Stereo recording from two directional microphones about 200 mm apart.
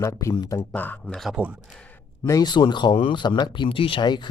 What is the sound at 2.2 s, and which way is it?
Speech, 20° left (ahead or behind).